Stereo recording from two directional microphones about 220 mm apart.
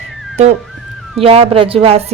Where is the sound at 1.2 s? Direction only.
25° right (ahead or behind).